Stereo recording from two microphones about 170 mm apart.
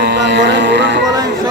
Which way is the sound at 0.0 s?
90° right.